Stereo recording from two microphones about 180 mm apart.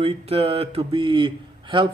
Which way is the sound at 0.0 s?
35° right (ahead or behind).